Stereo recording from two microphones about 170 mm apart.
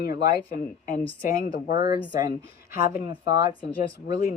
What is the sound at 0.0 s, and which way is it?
Speech, 60° left (ahead or behind).